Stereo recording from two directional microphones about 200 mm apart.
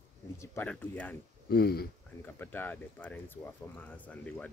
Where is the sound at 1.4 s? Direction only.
50° left (ahead or behind).